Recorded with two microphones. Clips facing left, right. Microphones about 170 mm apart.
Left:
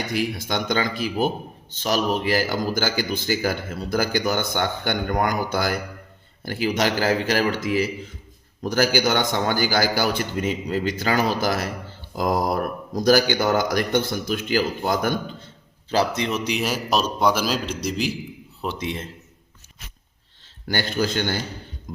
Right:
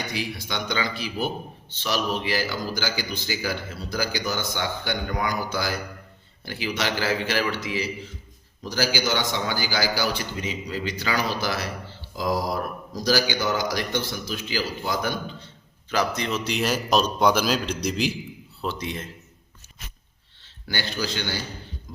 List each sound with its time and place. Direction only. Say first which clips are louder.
0.1 s speech: left 6 dB; 50° left (ahead or behind)
15.9 s a man's voice: left 3 dB; 25° left (ahead or behind); by 18.1 s centre (ahead or behind)
18.6 s a man's voice: left 2 dB; 20° left (ahead or behind)
20.7 s speech: left 6 dB; 45° left (ahead or behind)
21.9 s a sound: left 7 dB; 50° left (ahead or behind)